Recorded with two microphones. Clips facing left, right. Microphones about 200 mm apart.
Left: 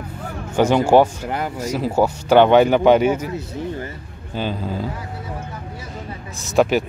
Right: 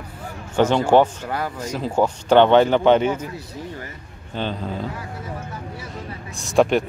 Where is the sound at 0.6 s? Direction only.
10° left (ahead or behind).